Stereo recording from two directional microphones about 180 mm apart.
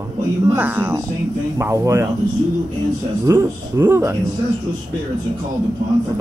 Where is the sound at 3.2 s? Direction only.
15° right (ahead or behind).